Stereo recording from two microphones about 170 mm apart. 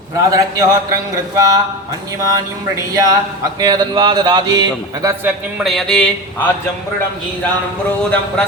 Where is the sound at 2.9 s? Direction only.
20° right (ahead or behind).